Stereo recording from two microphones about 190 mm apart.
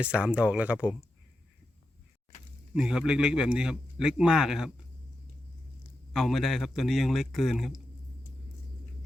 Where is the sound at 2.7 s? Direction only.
5° right (ahead or behind).